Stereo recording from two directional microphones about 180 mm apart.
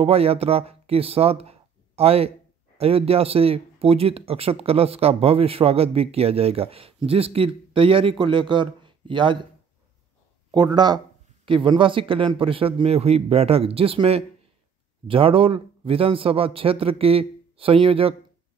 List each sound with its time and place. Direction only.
0.0 s speech: 35° right (ahead or behind)
10.5 s speech: 25° right (ahead or behind)